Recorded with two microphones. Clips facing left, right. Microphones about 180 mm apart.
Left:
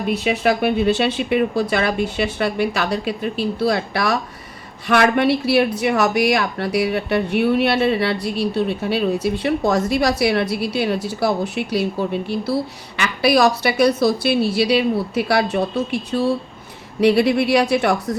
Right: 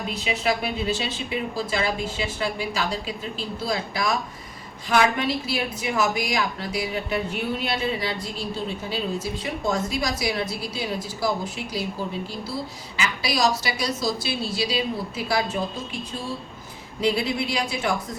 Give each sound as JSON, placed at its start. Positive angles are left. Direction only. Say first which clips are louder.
{"t": 0.1, "sound": "speech", "louder": "left 7 dB", "side_deg": 60}